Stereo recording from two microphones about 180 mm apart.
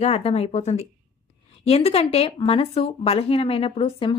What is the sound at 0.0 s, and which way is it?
A woman's voice, 35° left (ahead or behind).